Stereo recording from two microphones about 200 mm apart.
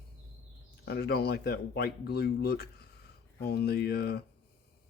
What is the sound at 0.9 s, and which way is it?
Speech, 55° left (ahead or behind).